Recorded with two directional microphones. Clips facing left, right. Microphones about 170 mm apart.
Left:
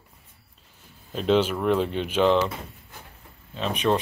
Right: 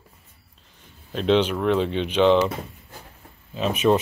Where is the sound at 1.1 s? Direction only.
5° left (ahead or behind).